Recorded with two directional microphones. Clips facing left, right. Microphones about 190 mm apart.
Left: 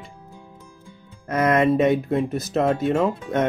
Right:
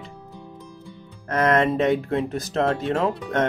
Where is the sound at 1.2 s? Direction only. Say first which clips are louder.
Left 1 dB; 10° left (ahead or behind).